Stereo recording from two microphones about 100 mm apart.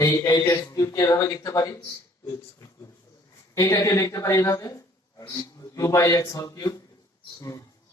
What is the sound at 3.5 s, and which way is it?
A man's voice, 30° left (ahead or behind).